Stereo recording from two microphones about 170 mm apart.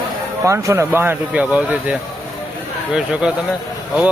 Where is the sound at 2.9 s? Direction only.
5° right (ahead or behind).